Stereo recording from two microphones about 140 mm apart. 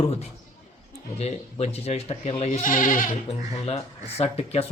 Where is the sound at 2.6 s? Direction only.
75° left (ahead or behind).